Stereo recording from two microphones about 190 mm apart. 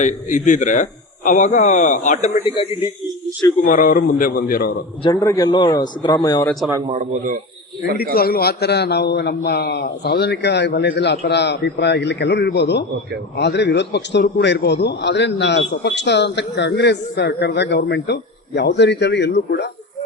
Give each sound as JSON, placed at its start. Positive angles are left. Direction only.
{"t": 0.0, "sound": "a man's voice", "side_deg": 40}
{"t": 3.6, "sound": "speech", "side_deg": 50}
{"t": 5.0, "sound": "a man's voice", "side_deg": 15}
{"t": 6.8, "sound": "speech", "side_deg": -40}
{"t": 8.1, "sound": "a man's voice", "side_deg": 50}